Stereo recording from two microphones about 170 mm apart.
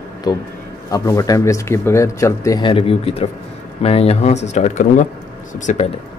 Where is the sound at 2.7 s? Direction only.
35° left (ahead or behind).